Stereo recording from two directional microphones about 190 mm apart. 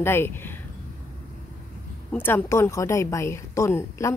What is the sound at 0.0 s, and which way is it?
Speech, 10° left (ahead or behind).